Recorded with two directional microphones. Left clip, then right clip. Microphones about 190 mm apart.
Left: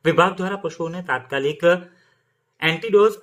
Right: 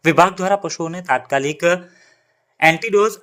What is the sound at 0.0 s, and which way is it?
Speech, 25° right (ahead or behind).